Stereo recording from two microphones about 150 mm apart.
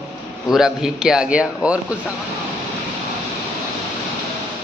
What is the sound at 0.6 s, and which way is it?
A man's voice, 5° right (ahead or behind).